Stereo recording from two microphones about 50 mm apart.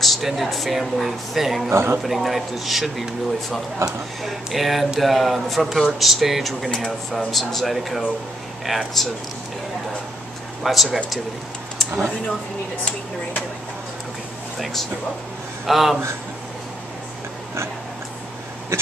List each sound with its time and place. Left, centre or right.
0.0 s speech: centre
1.7 s a man's voice: right
2.0 s speech: centre
6.7 s speech: centre
10.6 s speech: centre
14.6 s speech: centre
18.7 s a sound: right